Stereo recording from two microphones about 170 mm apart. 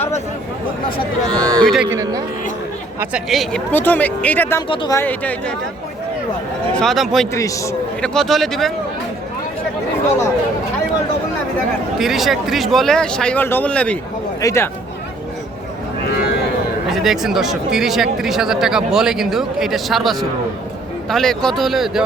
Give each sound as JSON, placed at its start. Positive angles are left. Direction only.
{"t": 1.3, "sound": "a sound", "side_deg": -25}
{"t": 1.6, "sound": "speech", "side_deg": 0}
{"t": 1.9, "sound": "a man's voice", "side_deg": -20}
{"t": 3.0, "sound": "speech", "side_deg": -5}
{"t": 4.7, "sound": "speech", "side_deg": 30}
{"t": 4.9, "sound": "speech", "side_deg": 10}
{"t": 6.7, "sound": "speech", "side_deg": 0}
{"t": 7.3, "sound": "speech", "side_deg": 20}
{"t": 8.0, "sound": "speech", "side_deg": 5}
{"t": 11.9, "sound": "speech", "side_deg": 0}
{"t": 16.9, "sound": "speech", "side_deg": 0}